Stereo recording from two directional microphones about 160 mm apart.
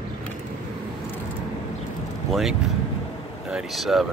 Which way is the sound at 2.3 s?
Centre (ahead or behind).